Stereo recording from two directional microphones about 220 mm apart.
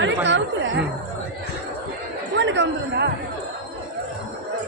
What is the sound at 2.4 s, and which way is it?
Speech, 55° right (ahead or behind).